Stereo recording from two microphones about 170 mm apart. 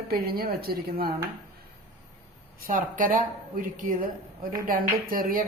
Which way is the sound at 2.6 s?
55° right (ahead or behind).